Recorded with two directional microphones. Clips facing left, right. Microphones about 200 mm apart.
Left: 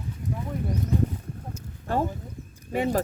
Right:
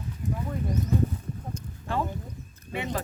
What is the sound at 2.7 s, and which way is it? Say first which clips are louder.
Speech: left 7 dB; 40° left (ahead or behind).